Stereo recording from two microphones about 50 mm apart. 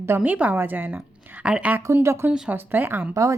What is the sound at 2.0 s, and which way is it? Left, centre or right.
Speech, right.